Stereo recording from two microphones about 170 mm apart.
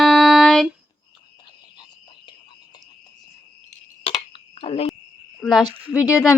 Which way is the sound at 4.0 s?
30° left (ahead or behind).